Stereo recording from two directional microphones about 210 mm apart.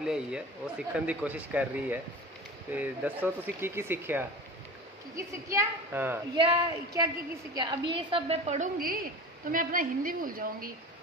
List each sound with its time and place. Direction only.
0.0 s speech: 5° right (ahead or behind)
6.3 s a woman's voice: 25° right (ahead or behind)
8.7 s a woman's voice: 45° right (ahead or behind)